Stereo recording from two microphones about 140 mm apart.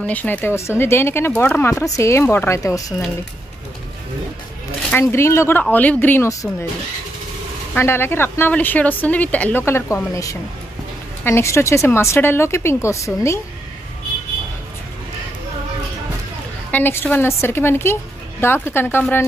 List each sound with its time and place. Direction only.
0.0 s a woman's voice: 10° left (ahead or behind)
4.9 s a woman's voice: 20° left (ahead or behind)
7.7 s a woman's voice: 15° left (ahead or behind)
16.7 s a woman's voice: 15° left (ahead or behind)